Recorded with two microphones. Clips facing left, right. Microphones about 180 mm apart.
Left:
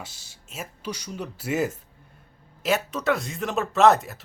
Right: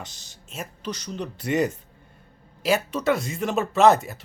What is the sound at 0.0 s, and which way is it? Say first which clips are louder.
Speech: right 1 dB; 5° left (ahead or behind).